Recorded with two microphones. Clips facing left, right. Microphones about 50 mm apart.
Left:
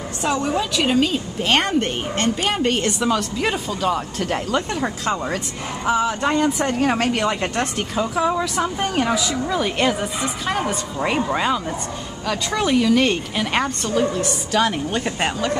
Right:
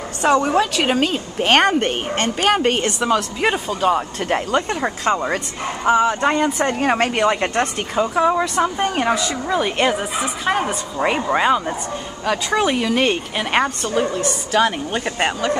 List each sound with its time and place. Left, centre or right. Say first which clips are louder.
0.2 s a woman's voice: right 6 dB; right
1.0 s a woman's voice: right 2 dB; right
2.6 s speech: right 1 dB; centre